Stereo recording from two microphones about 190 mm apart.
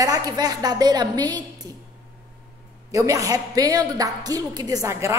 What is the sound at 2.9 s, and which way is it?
A woman's voice, 15° right (ahead or behind).